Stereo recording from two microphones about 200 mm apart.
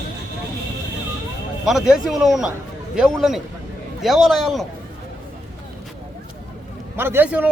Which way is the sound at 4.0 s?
Centre (ahead or behind).